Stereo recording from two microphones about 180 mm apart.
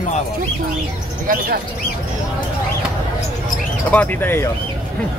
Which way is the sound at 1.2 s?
50° right (ahead or behind).